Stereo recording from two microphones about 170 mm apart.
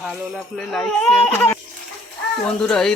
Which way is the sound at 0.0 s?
Centre (ahead or behind).